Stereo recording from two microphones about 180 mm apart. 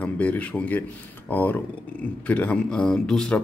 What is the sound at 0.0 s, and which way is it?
Speech, 10° left (ahead or behind).